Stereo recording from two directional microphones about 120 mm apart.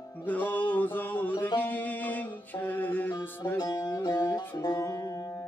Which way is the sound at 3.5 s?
35° left (ahead or behind).